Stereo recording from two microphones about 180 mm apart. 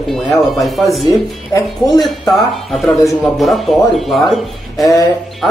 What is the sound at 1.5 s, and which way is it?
Speech, 20° left (ahead or behind).